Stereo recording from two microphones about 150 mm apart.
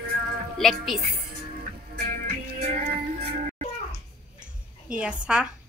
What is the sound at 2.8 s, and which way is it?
Music, 65° right (ahead or behind).